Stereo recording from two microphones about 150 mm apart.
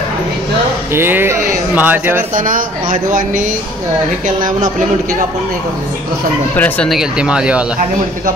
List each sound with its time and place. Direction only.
0.9 s speech: 15° right (ahead or behind)
2.3 s speech: 65° right (ahead or behind)
6.5 s speech: 10° left (ahead or behind)
6.9 s speech: 5° right (ahead or behind)